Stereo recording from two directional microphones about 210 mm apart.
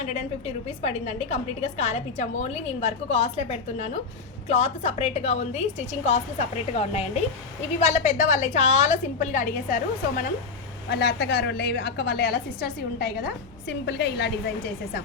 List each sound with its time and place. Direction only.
0.0 s a woman's voice: 30° left (ahead or behind)
10.8 s a woman's voice: 55° left (ahead or behind)